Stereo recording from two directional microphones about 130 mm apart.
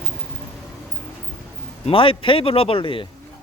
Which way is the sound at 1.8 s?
45° left (ahead or behind).